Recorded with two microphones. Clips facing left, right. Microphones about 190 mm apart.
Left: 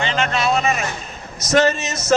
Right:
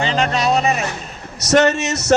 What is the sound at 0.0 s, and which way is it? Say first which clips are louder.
Speech: right 2 dB; 35° right (ahead or behind).